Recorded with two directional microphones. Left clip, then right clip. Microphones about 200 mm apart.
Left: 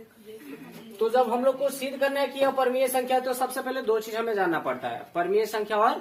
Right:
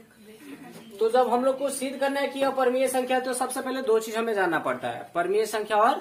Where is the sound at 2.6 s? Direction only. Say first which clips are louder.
Right 1 dB; 25° right (ahead or behind).